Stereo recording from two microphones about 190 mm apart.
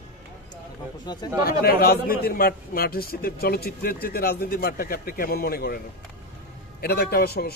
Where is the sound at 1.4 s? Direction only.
55° left (ahead or behind).